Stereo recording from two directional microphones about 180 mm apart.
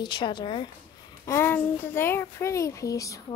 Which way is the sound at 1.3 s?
10° left (ahead or behind).